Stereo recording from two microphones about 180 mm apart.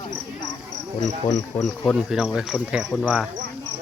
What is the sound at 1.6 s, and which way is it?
Speech, centre (ahead or behind).